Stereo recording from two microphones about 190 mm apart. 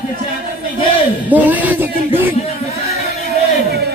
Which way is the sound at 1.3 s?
10° right (ahead or behind).